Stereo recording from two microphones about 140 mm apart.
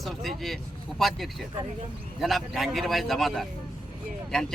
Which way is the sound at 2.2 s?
Centre (ahead or behind).